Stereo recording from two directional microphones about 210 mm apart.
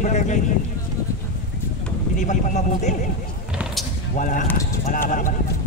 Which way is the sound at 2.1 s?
35° left (ahead or behind).